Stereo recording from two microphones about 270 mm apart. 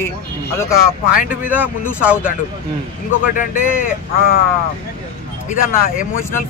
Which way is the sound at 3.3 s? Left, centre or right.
Left.